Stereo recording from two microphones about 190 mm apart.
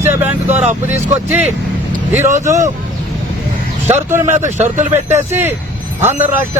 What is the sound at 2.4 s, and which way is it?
Speech, 15° right (ahead or behind).